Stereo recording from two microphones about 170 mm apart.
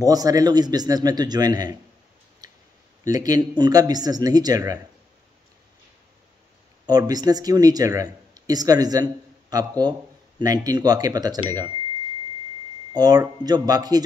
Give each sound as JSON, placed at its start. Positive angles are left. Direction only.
{"t": 0.0, "sound": "speech", "side_deg": -20}
{"t": 2.4, "sound": "clicking", "side_deg": -20}
{"t": 3.0, "sound": "speech", "side_deg": -20}
{"t": 6.9, "sound": "speech", "side_deg": -25}
{"t": 12.9, "sound": "speech", "side_deg": -20}